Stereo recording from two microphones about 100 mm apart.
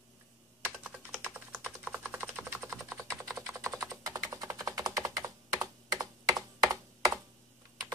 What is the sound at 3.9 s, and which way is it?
Computer keyboard, 35° right (ahead or behind).